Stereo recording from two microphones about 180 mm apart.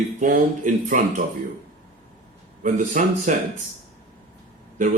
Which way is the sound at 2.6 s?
45° right (ahead or behind).